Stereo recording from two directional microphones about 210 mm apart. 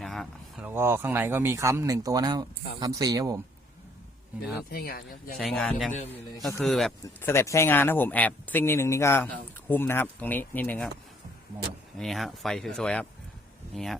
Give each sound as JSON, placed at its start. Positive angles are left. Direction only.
{"t": 0.0, "sound": "a sound", "side_deg": 0}
{"t": 0.7, "sound": "speech", "side_deg": -10}
{"t": 4.7, "sound": "speech", "side_deg": 45}
{"t": 5.4, "sound": "speech", "side_deg": 0}
{"t": 7.3, "sound": "speech", "side_deg": 15}
{"t": 11.9, "sound": "speech", "side_deg": 0}